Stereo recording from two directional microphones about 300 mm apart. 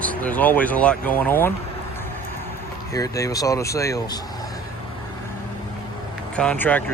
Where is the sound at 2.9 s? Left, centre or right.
Centre.